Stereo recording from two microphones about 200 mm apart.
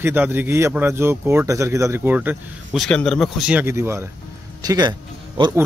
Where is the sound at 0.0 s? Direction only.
10° right (ahead or behind).